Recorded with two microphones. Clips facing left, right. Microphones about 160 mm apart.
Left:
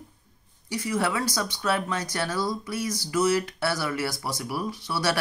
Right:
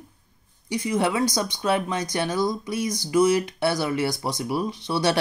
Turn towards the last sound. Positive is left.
turn(degrees=-20)  # may be behind; listen again after turning